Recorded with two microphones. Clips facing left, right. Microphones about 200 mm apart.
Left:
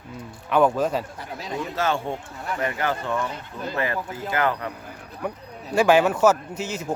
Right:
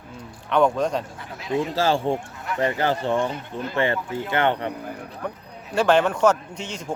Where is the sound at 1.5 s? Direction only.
30° right (ahead or behind).